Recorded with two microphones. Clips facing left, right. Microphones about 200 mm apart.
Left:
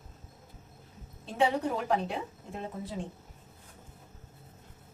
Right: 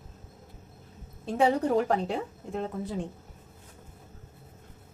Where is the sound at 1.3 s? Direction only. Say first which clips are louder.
Right 5 dB; 45° right (ahead or behind).